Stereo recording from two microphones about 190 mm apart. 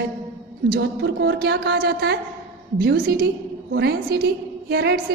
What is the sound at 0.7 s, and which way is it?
A woman's voice, 60° right (ahead or behind).